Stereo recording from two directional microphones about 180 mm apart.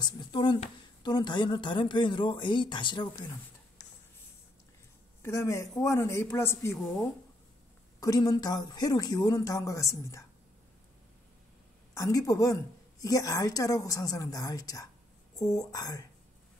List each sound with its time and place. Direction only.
0.0 s speech: 25° left (ahead or behind)
5.2 s speech: 20° left (ahead or behind)
11.9 s speech: 20° left (ahead or behind)